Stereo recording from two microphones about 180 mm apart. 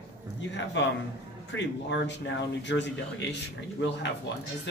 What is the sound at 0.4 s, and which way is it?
A man's voice, 85° left.